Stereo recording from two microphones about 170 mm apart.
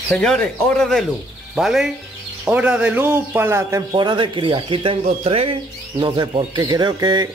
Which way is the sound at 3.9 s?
30° right (ahead or behind).